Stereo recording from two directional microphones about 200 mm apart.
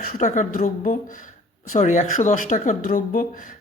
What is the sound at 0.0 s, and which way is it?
Speech, 40° left (ahead or behind).